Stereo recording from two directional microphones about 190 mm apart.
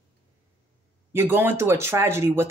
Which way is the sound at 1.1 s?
10° right (ahead or behind).